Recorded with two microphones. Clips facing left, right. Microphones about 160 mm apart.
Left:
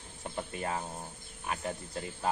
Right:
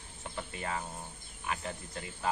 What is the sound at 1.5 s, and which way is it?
Speech, 40° left (ahead or behind).